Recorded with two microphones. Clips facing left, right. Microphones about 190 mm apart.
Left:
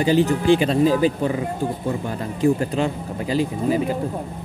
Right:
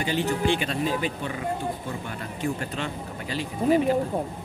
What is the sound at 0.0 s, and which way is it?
Speech, 35° left (ahead or behind).